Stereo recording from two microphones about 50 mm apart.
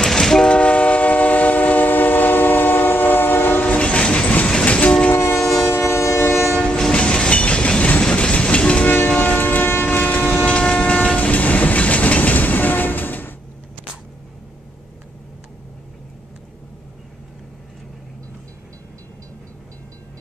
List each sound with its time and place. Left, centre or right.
0.0 s train: centre
0.5 s train: left
3.6 s train: left
5.1 s train: left
6.5 s train: centre
8.8 s train: left